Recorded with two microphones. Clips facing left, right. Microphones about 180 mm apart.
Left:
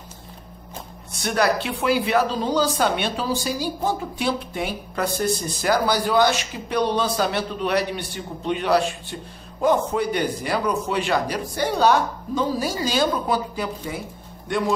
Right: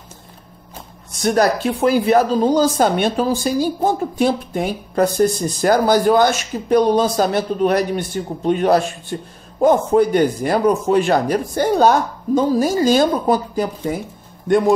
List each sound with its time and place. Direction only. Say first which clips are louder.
1.1 s speech: right 5 dB; 40° right (ahead or behind)